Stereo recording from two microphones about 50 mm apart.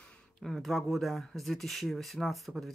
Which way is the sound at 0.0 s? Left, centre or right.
Centre.